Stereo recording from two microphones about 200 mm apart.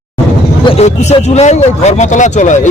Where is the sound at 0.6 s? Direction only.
30° left (ahead or behind).